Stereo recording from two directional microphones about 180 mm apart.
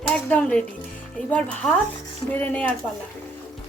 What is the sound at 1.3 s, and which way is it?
Speech, 5° left (ahead or behind).